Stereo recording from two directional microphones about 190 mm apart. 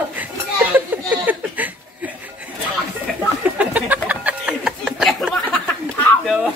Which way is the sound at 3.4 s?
5° right (ahead or behind).